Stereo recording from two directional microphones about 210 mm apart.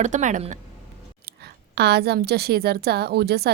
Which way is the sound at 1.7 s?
50° right (ahead or behind).